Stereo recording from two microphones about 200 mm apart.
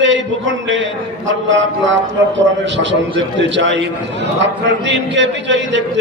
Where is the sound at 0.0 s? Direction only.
65° right (ahead or behind).